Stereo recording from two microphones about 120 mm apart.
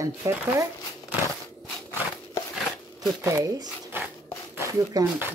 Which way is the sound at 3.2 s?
30° right (ahead or behind).